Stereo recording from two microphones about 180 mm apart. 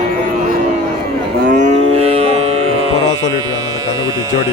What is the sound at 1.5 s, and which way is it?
Music, 45° right (ahead or behind).